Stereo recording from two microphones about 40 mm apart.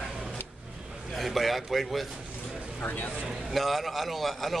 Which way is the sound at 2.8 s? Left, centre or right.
Left.